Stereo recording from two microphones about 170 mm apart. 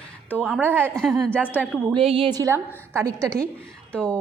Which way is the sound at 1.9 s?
30° right (ahead or behind).